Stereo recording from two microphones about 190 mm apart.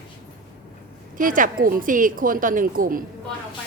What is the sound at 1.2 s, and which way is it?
A woman's voice, 45° right (ahead or behind).